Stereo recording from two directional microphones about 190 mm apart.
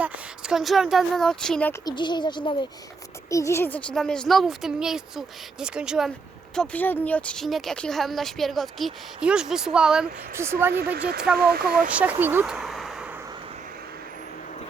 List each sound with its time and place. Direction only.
0.0 s speech: 5° right (ahead or behind)
1.8 s speech: 20° left (ahead or behind); by 6.1 s 5° right (ahead or behind)
6.6 s speech: 10° left (ahead or behind); by 10.8 s 10° right (ahead or behind)
11.3 s speech: 55° right (ahead or behind)
11.9 s speech: 5° right (ahead or behind)